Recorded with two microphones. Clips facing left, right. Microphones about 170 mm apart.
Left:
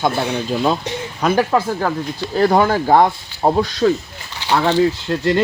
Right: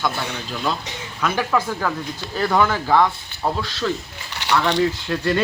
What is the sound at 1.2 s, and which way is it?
Speech, 35° left (ahead or behind).